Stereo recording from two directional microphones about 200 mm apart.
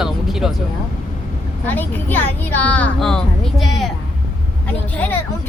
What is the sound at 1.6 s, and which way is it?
Speech, 10° left (ahead or behind).